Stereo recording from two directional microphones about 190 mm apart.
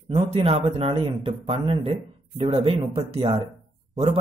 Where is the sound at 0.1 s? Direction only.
30° right (ahead or behind).